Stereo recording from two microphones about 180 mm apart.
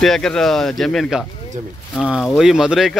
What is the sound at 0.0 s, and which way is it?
Speech, 5° left (ahead or behind).